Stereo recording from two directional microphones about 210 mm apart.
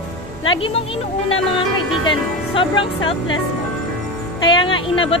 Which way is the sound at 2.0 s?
25° left (ahead or behind).